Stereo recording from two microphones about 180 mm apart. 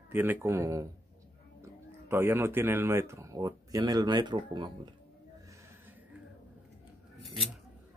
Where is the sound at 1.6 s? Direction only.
15° right (ahead or behind).